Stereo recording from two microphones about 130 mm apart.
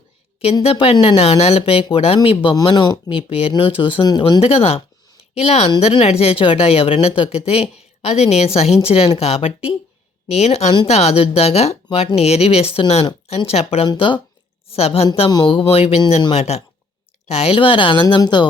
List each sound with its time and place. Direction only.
0.6 s a woman's voice: 50° left (ahead or behind)
4.2 s a woman's voice: 50° left (ahead or behind)
13.8 s a woman's voice: 40° left (ahead or behind)
15.3 s a woman's voice: 35° left (ahead or behind)